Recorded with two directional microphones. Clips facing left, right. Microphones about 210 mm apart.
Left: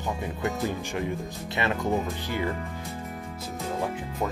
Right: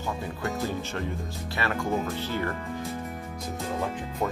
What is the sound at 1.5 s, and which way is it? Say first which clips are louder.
Speech: left 2 dB; 20° left (ahead or behind).